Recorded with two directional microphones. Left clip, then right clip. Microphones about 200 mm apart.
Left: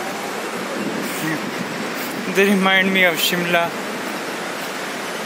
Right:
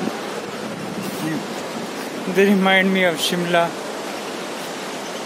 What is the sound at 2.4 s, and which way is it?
Speech, 15° right (ahead or behind).